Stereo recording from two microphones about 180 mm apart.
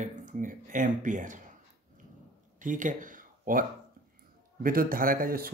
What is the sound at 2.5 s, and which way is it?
Speech, 45° right (ahead or behind).